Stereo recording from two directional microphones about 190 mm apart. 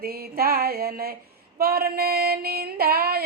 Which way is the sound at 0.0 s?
55° right (ahead or behind).